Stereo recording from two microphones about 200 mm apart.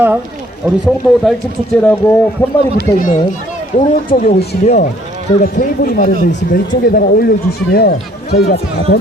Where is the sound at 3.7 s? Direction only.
40° left (ahead or behind).